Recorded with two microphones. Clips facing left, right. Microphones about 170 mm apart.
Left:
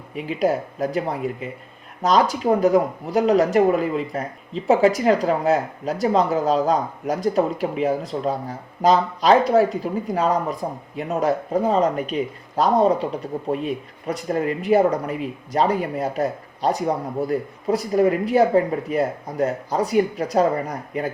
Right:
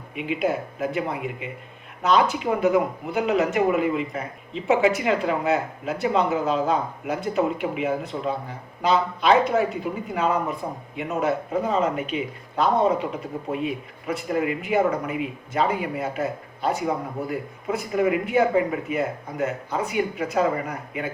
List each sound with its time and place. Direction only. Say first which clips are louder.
0.2 s speech: left 3 dB; 35° left (ahead or behind)
14.1 s speech: left 2 dB; 35° left (ahead or behind)